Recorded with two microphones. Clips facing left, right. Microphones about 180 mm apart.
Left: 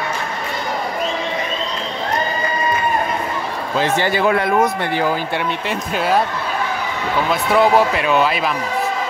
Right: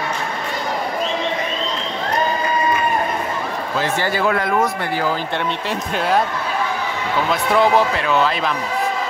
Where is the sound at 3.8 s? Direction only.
20° left (ahead or behind).